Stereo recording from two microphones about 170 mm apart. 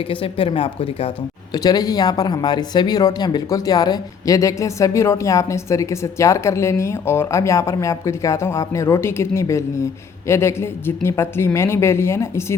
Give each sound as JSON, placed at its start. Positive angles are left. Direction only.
{"t": 0.0, "sound": "a woman's voice", "side_deg": 30}
{"t": 1.5, "sound": "speech", "side_deg": 20}